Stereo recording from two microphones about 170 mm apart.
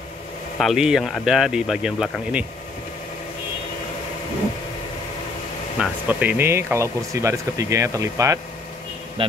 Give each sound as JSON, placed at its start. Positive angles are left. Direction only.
{"t": 0.6, "sound": "speech", "side_deg": 0}
{"t": 5.8, "sound": "speech", "side_deg": -10}